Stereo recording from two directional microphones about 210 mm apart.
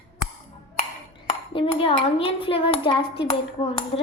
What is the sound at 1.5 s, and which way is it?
A child's voice, 25° left (ahead or behind).